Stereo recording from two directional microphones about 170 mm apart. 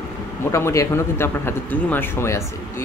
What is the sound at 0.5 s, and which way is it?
Speech, 15° left (ahead or behind).